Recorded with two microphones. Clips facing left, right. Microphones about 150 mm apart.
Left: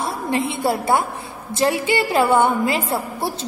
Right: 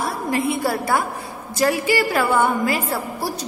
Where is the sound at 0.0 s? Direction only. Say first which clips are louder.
Even; 25° left (ahead or behind).